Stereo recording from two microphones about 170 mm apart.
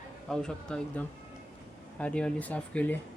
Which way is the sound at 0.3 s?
5° left (ahead or behind).